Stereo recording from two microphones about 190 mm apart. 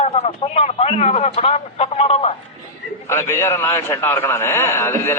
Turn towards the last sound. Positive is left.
turn(degrees=15)  # may be behind; listen again after turning